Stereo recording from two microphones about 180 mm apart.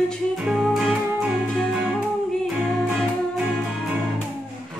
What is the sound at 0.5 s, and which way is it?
Music, centre (ahead or behind).